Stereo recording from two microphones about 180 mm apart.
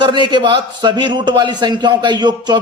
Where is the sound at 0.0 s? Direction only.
25° right (ahead or behind).